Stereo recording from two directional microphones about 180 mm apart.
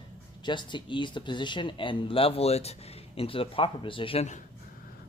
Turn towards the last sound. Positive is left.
turn(degrees=35)  # may be behind; listen again after turning